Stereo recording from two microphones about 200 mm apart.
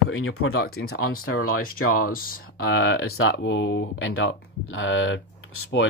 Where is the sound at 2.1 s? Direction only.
45° left (ahead or behind).